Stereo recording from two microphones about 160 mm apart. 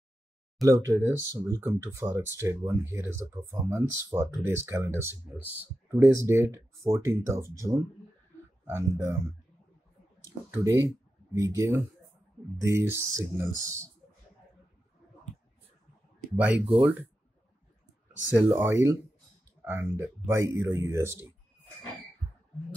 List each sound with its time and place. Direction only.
0.6 s speech: 20° right (ahead or behind)
10.2 s speech: 20° right (ahead or behind)
16.3 s speech: 10° right (ahead or behind)
18.3 s speech: 15° right (ahead or behind)